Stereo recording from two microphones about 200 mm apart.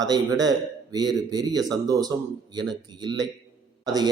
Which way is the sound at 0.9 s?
20° right (ahead or behind).